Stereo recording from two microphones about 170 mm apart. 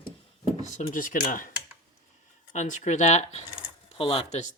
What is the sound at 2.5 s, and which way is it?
Speech, 45° left (ahead or behind).